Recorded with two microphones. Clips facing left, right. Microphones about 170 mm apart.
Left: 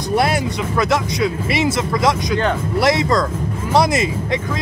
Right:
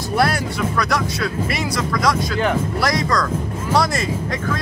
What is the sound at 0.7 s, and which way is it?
Speech, 25° left (ahead or behind).